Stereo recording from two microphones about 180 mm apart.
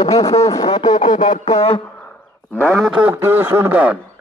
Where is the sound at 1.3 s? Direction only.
35° left (ahead or behind).